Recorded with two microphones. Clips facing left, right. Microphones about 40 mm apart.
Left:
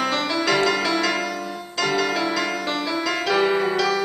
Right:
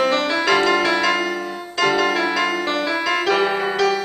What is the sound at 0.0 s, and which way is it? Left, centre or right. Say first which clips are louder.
Music: right 4 dB; centre.